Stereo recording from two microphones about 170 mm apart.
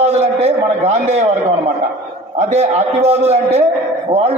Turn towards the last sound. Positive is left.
turn(degrees=-40)  # may be behind; listen again after turning